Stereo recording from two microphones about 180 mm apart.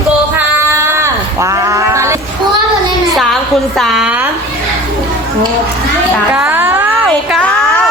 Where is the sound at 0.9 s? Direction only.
15° right (ahead or behind).